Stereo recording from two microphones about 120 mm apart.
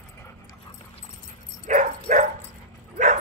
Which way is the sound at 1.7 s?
90° right.